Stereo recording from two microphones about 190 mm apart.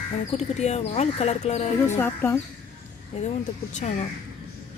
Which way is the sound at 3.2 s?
40° left (ahead or behind).